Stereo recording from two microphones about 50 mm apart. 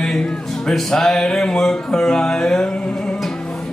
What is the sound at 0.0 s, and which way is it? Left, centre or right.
Speech, centre.